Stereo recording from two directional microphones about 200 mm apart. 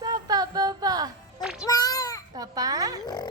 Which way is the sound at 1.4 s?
5° right (ahead or behind).